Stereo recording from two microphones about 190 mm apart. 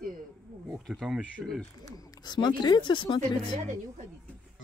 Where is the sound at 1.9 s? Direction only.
20° left (ahead or behind).